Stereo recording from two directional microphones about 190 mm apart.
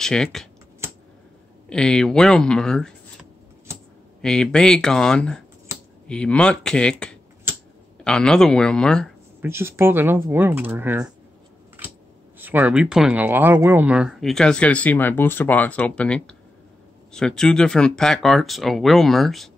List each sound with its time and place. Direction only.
0.0 s speech: centre (ahead or behind)
1.7 s speech: 5° left (ahead or behind)
4.2 s speech: 5° left (ahead or behind)
9.4 s speech: 15° right (ahead or behind)
12.4 s speech: 10° right (ahead or behind)